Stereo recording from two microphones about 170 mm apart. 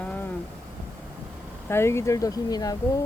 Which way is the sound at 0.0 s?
10° left (ahead or behind).